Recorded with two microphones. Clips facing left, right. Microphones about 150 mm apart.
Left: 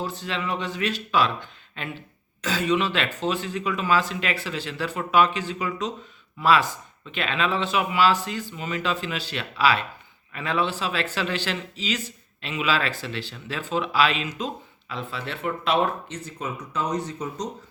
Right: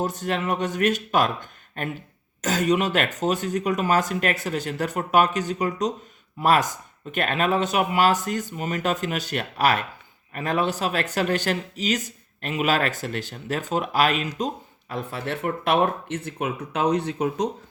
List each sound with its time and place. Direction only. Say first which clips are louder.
0.0 s speech: right 4 dB; 45° right (ahead or behind)